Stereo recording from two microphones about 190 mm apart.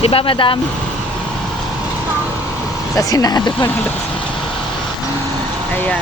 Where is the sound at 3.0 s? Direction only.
20° left (ahead or behind).